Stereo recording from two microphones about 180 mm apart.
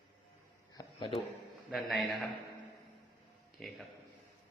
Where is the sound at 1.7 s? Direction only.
Centre (ahead or behind).